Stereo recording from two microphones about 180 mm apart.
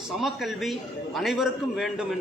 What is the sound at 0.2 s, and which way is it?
A man's voice, centre (ahead or behind).